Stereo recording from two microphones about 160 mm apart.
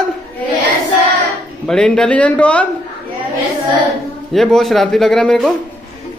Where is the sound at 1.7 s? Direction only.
5° left (ahead or behind).